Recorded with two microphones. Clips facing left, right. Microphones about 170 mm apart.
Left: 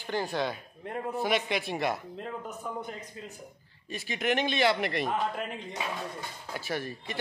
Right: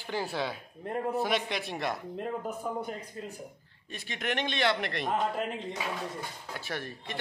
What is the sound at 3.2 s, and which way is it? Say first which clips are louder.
Speech: right 3 dB; 45° right (ahead or behind).